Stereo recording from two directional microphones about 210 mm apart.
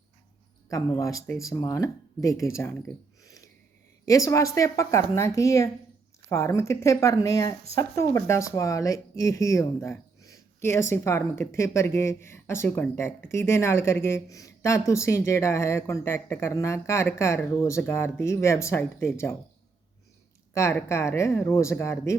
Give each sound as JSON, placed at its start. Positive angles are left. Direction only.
{"t": 0.7, "sound": "speech", "side_deg": 15}
{"t": 3.2, "sound": "a sound", "side_deg": 15}
{"t": 4.0, "sound": "speech", "side_deg": 15}
{"t": 20.5, "sound": "speech", "side_deg": 15}